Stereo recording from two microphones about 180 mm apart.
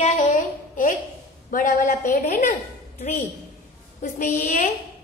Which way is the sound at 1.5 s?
45° left (ahead or behind).